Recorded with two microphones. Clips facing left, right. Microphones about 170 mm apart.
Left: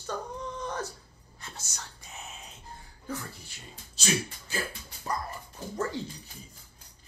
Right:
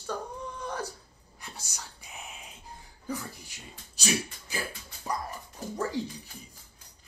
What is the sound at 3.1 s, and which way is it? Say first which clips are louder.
Speech: right 2 dB; 15° right (ahead or behind).